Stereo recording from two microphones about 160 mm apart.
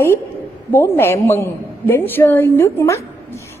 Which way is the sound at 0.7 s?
15° left (ahead or behind).